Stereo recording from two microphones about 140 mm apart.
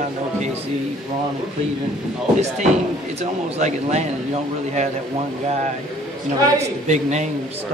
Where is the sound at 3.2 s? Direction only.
55° right (ahead or behind).